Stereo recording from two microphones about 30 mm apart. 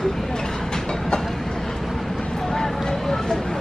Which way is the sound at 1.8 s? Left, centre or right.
Centre.